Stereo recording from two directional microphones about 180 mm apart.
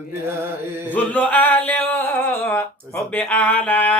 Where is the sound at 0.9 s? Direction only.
10° left (ahead or behind).